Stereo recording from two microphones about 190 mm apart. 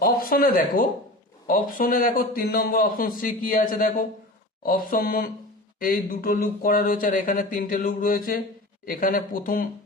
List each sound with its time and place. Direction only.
0.0 s a man's voice: 50° left (ahead or behind)